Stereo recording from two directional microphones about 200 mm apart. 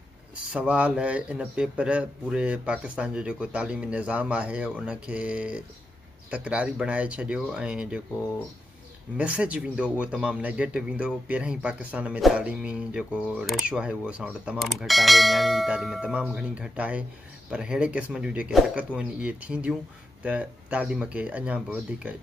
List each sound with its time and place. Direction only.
0.5 s a man's voice: 5° right (ahead or behind)
9.1 s a man's voice: 5° right (ahead or behind)